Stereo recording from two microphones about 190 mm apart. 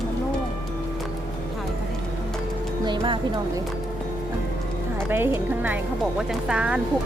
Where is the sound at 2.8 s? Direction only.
25° right (ahead or behind).